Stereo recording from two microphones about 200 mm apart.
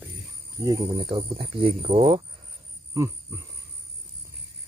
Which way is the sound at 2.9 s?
15° right (ahead or behind).